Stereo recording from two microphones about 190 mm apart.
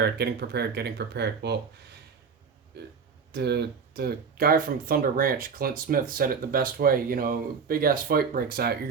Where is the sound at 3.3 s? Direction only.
60° right (ahead or behind).